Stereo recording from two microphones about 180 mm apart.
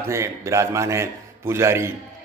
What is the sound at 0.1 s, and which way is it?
A man's voice, 15° right (ahead or behind).